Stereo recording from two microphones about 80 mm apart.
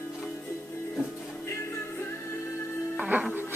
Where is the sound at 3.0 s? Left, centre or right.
Centre.